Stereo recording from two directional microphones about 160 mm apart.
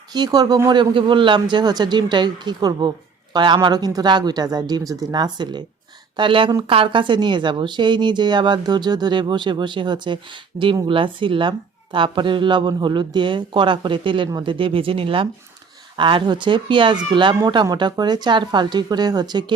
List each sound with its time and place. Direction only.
0.1 s a woman's voice: 25° right (ahead or behind)